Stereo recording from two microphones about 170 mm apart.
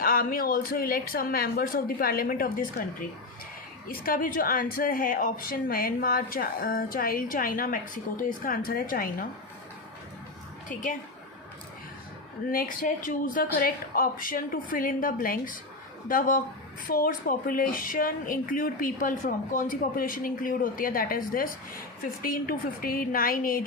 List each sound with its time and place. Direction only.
0.0 s a woman's voice: 60° left (ahead or behind)
3.8 s a woman's voice: 55° left (ahead or behind)
10.7 s a woman's voice: 50° left (ahead or behind)
12.5 s a woman's voice: 55° left (ahead or behind)